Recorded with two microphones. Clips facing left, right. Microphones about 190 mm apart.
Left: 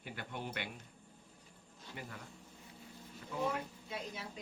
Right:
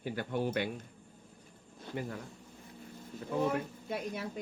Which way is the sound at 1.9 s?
35° right (ahead or behind).